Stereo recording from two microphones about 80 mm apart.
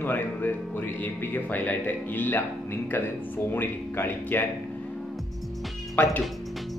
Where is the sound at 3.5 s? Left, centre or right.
Left.